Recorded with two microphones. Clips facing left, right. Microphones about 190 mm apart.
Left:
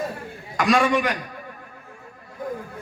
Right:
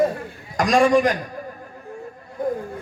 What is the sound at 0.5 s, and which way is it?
Speech, 35° right (ahead or behind).